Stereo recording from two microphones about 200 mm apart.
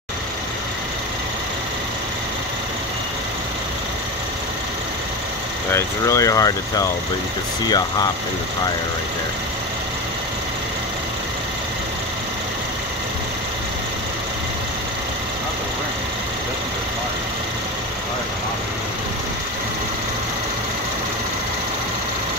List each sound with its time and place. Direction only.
5.7 s speech: 15° left (ahead or behind)